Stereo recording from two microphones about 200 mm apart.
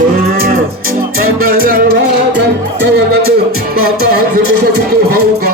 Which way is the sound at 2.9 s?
50° right (ahead or behind).